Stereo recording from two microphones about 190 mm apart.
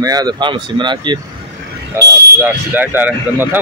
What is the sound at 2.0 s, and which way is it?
Speech, 10° right (ahead or behind).